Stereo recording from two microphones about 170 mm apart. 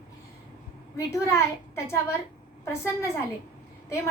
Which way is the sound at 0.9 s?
15° left (ahead or behind).